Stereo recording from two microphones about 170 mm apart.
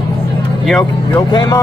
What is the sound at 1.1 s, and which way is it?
Speech, 20° left (ahead or behind).